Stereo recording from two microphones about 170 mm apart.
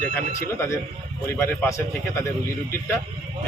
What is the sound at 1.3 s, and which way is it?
Speech, 15° left (ahead or behind).